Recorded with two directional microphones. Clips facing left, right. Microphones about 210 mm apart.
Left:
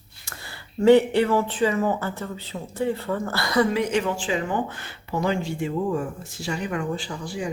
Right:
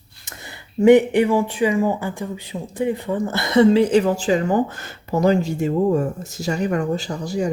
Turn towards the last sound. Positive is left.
turn(degrees=-40)  # may be behind; listen again after turning